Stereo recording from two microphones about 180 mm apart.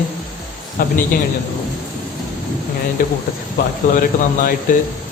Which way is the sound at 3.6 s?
60° left (ahead or behind).